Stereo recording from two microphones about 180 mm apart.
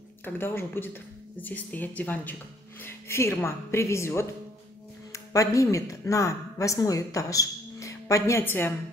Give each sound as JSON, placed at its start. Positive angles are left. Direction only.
{"t": 0.2, "sound": "a woman's voice", "side_deg": 15}